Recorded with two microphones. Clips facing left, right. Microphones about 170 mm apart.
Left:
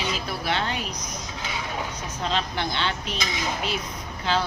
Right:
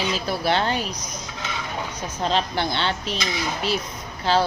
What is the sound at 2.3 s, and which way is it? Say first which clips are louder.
Speech: right 4 dB; 35° right (ahead or behind).